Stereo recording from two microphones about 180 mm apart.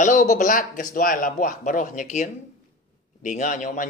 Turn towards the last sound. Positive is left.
turn(degrees=45)  # may be behind; listen again after turning